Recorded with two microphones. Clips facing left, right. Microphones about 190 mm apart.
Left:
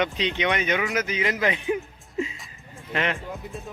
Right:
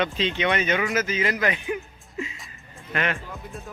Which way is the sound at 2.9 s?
25° left (ahead or behind).